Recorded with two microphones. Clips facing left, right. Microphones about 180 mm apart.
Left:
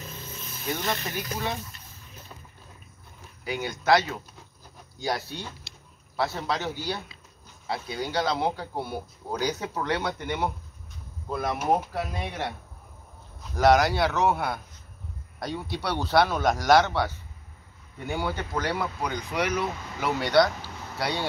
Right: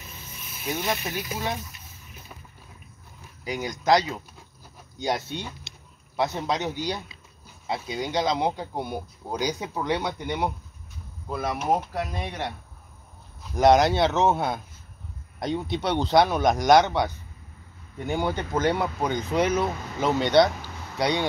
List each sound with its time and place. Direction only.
0.7 s a man's voice: 10° right (ahead or behind)
3.8 s a man's voice: 15° right (ahead or behind); by 12.5 s centre (ahead or behind)
13.6 s speech: 20° right (ahead or behind)